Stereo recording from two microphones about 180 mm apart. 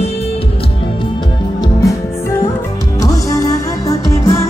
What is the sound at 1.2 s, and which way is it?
Music, 20° left (ahead or behind).